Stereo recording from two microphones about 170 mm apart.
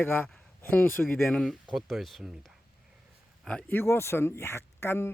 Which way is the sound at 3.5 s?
10° left (ahead or behind).